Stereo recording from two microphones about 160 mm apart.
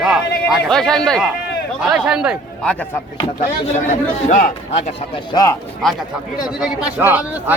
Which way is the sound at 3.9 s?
50° left (ahead or behind).